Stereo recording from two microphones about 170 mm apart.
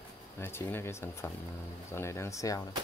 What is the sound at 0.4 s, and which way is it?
Speech, 15° left (ahead or behind).